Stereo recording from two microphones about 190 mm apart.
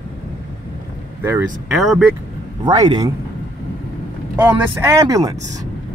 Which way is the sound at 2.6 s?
20° right (ahead or behind).